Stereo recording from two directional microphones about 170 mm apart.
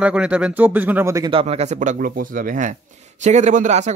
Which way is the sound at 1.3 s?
40° right (ahead or behind).